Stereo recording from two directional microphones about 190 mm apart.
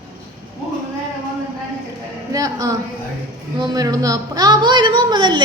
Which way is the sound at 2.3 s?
20° right (ahead or behind).